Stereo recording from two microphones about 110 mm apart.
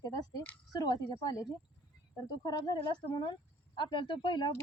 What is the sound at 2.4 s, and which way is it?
Speech, 40° left (ahead or behind).